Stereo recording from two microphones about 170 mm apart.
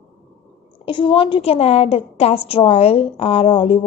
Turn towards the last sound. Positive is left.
turn(degrees=30)  # may be behind; listen again after turning